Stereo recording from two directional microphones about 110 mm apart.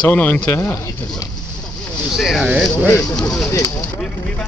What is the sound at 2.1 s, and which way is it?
Speech, 5° right (ahead or behind).